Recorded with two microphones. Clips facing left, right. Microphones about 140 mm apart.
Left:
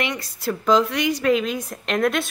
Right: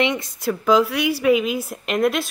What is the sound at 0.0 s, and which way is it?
Speech, 20° right (ahead or behind).